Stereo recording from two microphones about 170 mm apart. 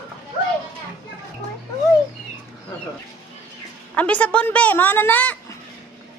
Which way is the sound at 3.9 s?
10° left (ahead or behind).